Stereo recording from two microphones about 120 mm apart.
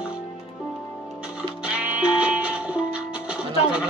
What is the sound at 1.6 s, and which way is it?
Music, 10° right (ahead or behind).